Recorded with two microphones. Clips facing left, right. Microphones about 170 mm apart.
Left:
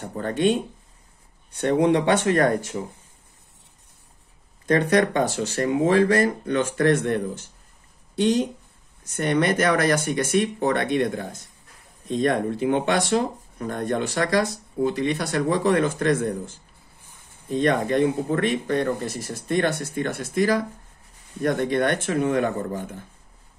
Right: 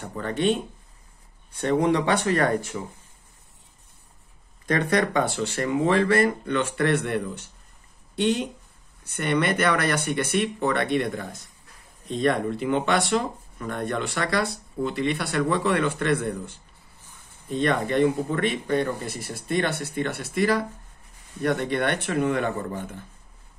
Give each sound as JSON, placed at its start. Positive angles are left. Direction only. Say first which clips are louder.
{"t": 0.0, "sound": "speech", "louder": "left 3 dB", "side_deg": 40}
{"t": 2.0, "sound": "speech", "louder": "left 3 dB", "side_deg": 45}
{"t": 4.6, "sound": "speech", "louder": "left 4 dB", "side_deg": 45}
{"t": 9.0, "sound": "speech", "louder": "left 2 dB", "side_deg": 45}
{"t": 17.5, "sound": "speech", "louder": "left 3 dB", "side_deg": 45}